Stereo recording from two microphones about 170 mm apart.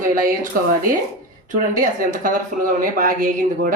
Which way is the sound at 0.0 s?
55° right (ahead or behind).